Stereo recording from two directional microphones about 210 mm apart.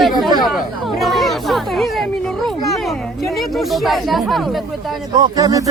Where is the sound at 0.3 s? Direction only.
Centre (ahead or behind).